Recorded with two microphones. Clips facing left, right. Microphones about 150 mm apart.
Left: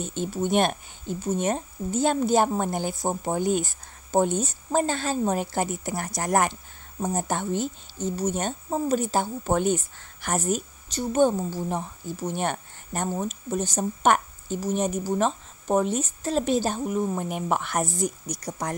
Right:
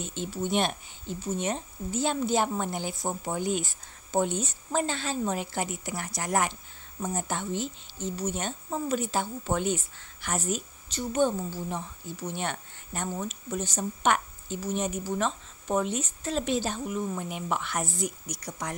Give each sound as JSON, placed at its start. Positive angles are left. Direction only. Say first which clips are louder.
{"t": 0.0, "sound": "speech", "louder": "left 5 dB", "side_deg": 45}